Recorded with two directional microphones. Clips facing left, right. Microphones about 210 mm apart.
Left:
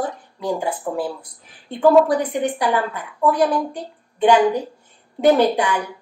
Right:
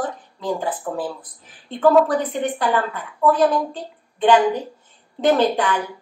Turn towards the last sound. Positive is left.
turn(degrees=10)  # may be behind; listen again after turning